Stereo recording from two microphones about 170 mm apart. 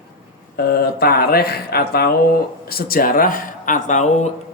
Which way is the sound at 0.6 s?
65° left (ahead or behind).